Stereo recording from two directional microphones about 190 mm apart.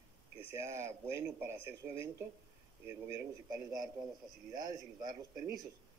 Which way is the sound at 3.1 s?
20° right (ahead or behind).